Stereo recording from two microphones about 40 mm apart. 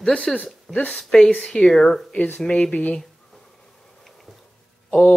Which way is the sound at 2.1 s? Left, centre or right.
Left.